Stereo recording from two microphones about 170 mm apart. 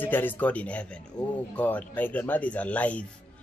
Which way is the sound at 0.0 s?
10° left (ahead or behind).